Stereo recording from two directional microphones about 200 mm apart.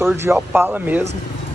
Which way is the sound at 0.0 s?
15° right (ahead or behind).